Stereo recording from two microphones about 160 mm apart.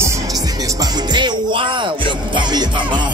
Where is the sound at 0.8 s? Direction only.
25° right (ahead or behind).